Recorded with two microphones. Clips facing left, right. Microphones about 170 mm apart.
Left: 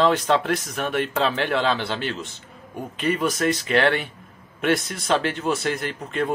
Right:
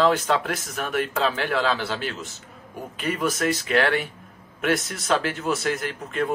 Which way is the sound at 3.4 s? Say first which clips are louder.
Left 1 dB; 5° right (ahead or behind).